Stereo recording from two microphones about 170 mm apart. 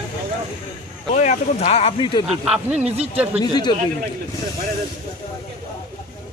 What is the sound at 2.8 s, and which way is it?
Speech, 35° right (ahead or behind).